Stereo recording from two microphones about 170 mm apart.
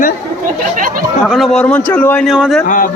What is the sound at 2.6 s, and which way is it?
Speech, 50° left (ahead or behind).